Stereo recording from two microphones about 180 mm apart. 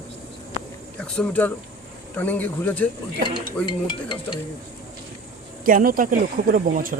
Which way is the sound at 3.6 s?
25° left (ahead or behind).